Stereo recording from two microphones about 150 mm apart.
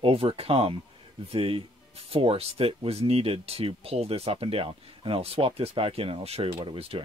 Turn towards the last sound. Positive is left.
turn(degrees=-35)  # may be behind; listen again after turning